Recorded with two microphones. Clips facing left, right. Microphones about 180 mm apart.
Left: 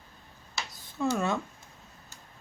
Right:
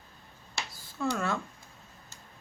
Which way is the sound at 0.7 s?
20° left (ahead or behind).